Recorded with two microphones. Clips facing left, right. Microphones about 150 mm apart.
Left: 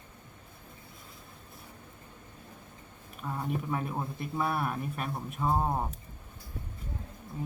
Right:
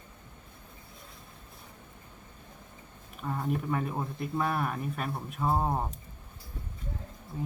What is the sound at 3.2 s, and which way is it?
Speech, centre (ahead or behind).